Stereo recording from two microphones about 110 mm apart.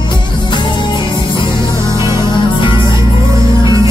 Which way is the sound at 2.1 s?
45° left (ahead or behind).